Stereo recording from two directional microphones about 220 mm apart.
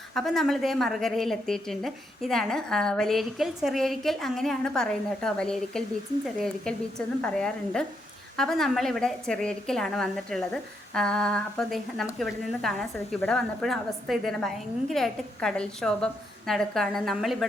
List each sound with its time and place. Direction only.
0.1 s a woman's voice: centre (ahead or behind)